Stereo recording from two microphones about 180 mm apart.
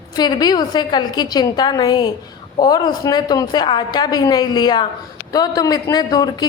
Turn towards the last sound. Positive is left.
turn(degrees=20)  # may be behind; listen again after turning